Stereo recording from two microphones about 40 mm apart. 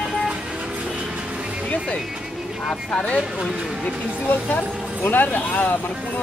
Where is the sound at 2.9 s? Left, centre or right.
Left.